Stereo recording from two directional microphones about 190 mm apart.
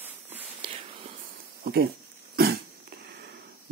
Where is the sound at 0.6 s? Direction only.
30° right (ahead or behind).